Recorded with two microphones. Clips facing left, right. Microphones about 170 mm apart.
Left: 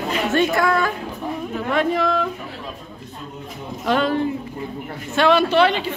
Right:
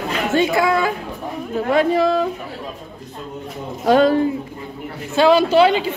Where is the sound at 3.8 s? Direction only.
40° right (ahead or behind).